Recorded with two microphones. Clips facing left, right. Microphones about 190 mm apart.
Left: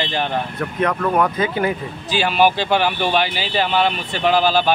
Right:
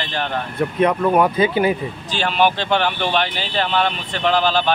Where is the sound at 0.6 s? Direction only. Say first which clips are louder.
Right 5 dB; 20° right (ahead or behind).